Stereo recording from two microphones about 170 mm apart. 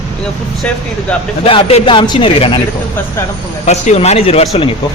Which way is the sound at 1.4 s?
35° left (ahead or behind).